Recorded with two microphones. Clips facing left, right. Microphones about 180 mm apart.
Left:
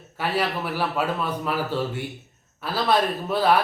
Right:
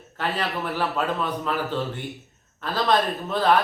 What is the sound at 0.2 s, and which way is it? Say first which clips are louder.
Speech: left 2 dB; 10° left (ahead or behind).